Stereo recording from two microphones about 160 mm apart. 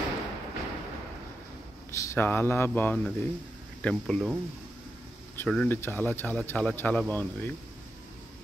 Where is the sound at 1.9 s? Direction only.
15° left (ahead or behind).